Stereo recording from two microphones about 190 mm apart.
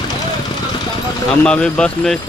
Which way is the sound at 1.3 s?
5° left (ahead or behind).